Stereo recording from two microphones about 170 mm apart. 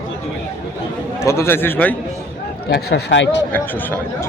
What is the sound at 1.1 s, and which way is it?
Speech, 15° left (ahead or behind).